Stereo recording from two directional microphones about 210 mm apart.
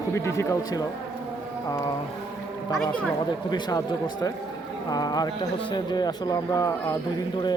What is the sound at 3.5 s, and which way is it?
Speech, 20° left (ahead or behind).